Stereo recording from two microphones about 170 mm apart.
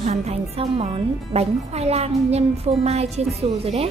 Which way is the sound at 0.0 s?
40° right (ahead or behind).